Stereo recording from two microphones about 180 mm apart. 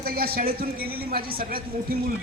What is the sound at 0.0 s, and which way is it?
A woman's voice, 60° right (ahead or behind).